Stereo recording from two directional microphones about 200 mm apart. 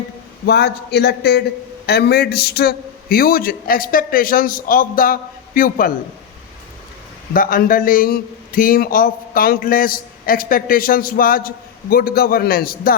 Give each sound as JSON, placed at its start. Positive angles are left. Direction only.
{"t": 0.4, "sound": "a man's voice", "side_deg": 55}
{"t": 7.3, "sound": "a man's voice", "side_deg": 45}